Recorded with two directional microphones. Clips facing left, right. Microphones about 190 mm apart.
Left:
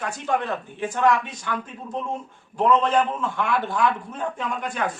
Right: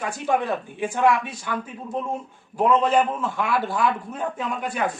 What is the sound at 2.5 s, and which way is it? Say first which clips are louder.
Speech: right 1 dB; 10° right (ahead or behind).